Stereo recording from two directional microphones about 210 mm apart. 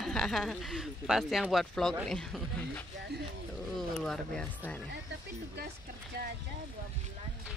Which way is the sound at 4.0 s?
5° left (ahead or behind).